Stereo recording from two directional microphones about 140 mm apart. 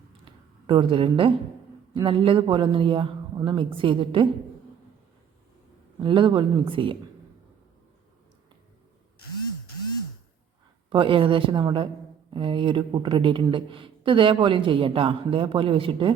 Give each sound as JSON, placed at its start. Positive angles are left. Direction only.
{"t": 0.3, "sound": "a sound", "side_deg": -35}
{"t": 1.9, "sound": "speech", "side_deg": -35}
{"t": 6.0, "sound": "speech", "side_deg": -35}
{"t": 10.8, "sound": "speech", "side_deg": -40}